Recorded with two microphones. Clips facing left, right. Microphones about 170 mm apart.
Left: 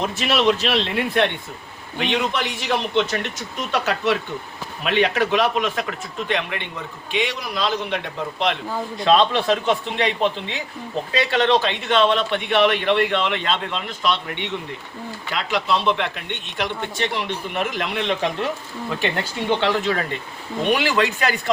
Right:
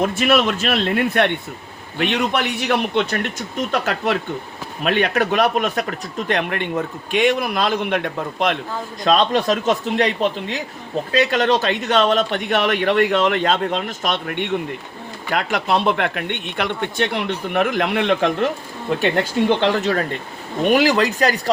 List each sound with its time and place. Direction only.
0.0 s a man's voice: 50° right (ahead or behind)
11.1 s a man's voice: 45° right (ahead or behind)
19.5 s a man's voice: 45° right (ahead or behind)